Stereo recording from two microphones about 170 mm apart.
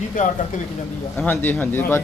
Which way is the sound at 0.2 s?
50° left (ahead or behind).